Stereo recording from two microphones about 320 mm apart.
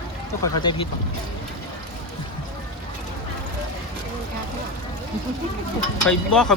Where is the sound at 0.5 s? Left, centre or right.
Centre.